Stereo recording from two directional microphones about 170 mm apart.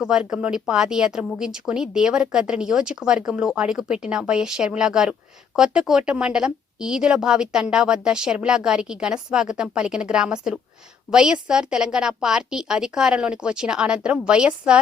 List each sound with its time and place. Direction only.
0.0 s speech: 5° right (ahead or behind)